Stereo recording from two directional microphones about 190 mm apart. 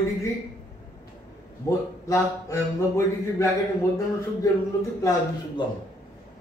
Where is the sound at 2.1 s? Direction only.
15° left (ahead or behind).